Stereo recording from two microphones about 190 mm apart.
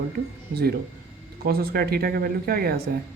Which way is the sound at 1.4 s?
55° right (ahead or behind).